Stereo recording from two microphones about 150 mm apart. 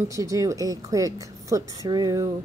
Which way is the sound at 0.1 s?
20° right (ahead or behind).